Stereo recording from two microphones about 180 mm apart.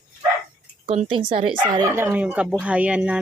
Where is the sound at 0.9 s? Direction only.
30° right (ahead or behind).